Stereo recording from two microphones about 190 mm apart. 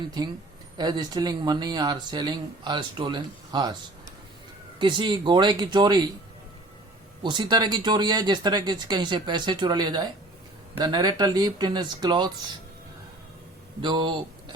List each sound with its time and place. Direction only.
0.8 s speech: 20° right (ahead or behind)
4.8 s speech: 25° right (ahead or behind)
7.2 s speech: 25° right (ahead or behind)
13.8 s speech: 25° right (ahead or behind)